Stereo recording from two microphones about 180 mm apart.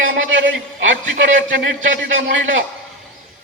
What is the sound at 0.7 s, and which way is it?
A man's voice, 80° right.